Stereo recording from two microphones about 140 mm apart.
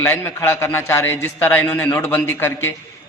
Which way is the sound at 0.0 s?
20° left (ahead or behind).